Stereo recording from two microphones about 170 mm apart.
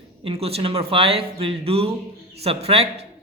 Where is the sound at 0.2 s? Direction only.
35° right (ahead or behind).